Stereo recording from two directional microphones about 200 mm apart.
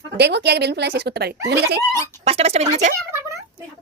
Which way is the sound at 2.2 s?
30° right (ahead or behind).